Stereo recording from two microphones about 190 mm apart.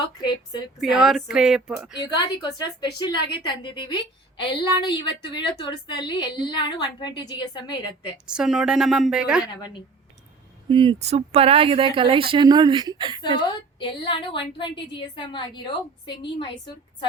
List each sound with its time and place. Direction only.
0.0 s a woman's voice: 25° left (ahead or behind)
0.8 s speech: centre (ahead or behind)
2.0 s a woman's voice: 20° left (ahead or behind)
8.3 s speech: 5° right (ahead or behind)
10.7 s speech: 25° right (ahead or behind)
13.5 s a woman's voice: 25° left (ahead or behind)